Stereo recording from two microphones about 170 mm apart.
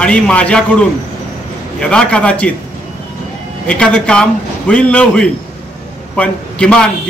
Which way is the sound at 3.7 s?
5° left (ahead or behind).